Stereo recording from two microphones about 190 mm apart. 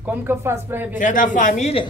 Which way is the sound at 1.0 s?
45° left (ahead or behind).